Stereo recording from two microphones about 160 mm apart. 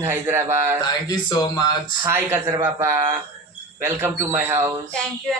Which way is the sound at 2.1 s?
15° right (ahead or behind).